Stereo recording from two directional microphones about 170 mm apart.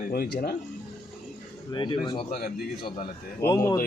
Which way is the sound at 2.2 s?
60° left (ahead or behind).